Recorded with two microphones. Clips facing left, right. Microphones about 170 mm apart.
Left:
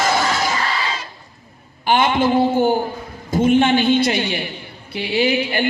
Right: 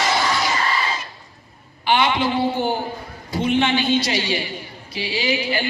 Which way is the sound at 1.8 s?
45° left (ahead or behind).